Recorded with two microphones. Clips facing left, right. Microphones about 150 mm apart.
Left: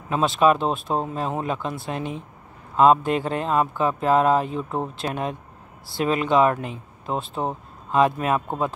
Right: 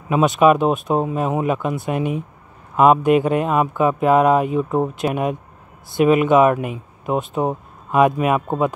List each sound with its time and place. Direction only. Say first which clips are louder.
0.1 s speech: right 5 dB; 15° right (ahead or behind)